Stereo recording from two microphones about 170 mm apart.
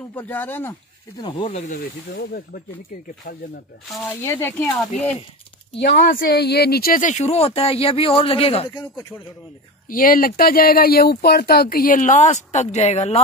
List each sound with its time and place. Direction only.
0.1 s speech: 10° left (ahead or behind)
1.1 s speech: 30° left (ahead or behind)
1.7 s speech: 60° left (ahead or behind)
4.2 s speech: 15° left (ahead or behind)
6.1 s speech: 70° left (ahead or behind); by 8.8 s 30° left (ahead or behind)
9.8 s speech: 55° left (ahead or behind); by 13.2 s 40° left (ahead or behind)